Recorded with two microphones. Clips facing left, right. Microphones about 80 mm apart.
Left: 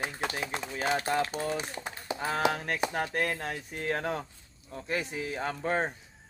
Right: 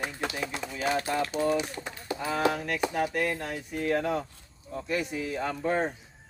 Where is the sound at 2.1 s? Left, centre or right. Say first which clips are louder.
Right 1 dB; centre.